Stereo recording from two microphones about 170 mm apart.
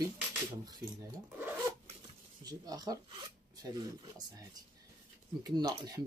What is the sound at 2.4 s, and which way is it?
Speech, 20° right (ahead or behind).